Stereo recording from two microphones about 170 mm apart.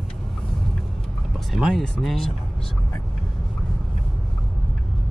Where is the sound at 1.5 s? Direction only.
Centre (ahead or behind).